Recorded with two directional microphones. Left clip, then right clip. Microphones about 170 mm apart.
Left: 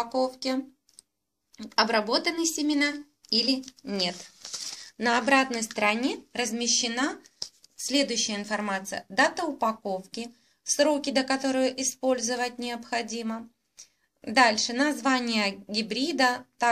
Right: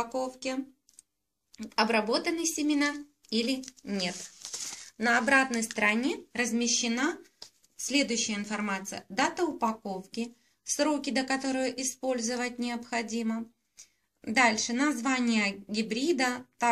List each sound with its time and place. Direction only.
0.1 s a woman's voice: 40° left (ahead or behind)
1.7 s a woman's voice: 35° left (ahead or behind)